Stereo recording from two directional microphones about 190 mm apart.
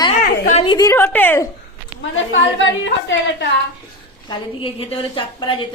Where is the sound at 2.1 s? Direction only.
90° left.